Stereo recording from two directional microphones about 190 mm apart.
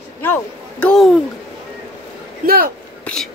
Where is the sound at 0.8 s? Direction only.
Centre (ahead or behind).